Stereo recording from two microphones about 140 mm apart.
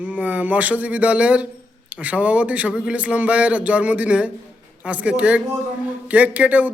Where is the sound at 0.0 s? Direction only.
10° right (ahead or behind).